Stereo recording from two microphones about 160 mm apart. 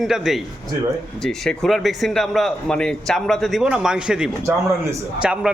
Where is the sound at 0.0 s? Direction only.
Centre (ahead or behind).